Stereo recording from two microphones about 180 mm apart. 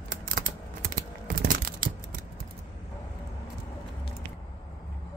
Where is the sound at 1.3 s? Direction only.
50° right (ahead or behind).